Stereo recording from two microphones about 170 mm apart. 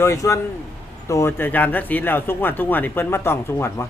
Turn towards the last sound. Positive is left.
turn(degrees=15)  # may be behind; listen again after turning